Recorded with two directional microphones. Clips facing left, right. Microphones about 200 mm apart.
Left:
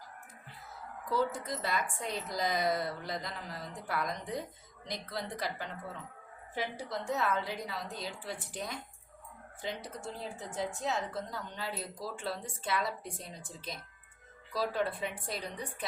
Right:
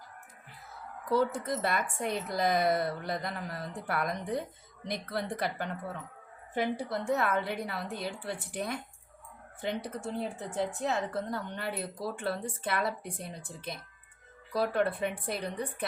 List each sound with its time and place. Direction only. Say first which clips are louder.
1.1 s a woman's voice: right 4 dB; 60° right (ahead or behind)